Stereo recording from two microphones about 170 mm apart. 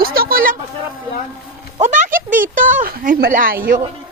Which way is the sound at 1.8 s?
45° right (ahead or behind).